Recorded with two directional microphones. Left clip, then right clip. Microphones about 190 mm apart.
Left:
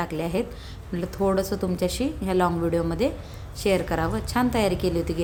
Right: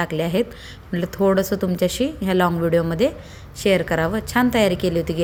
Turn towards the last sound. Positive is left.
turn(degrees=-15)  # may be behind; listen again after turning